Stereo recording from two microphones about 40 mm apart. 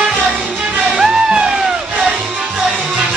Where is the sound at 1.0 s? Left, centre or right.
Centre.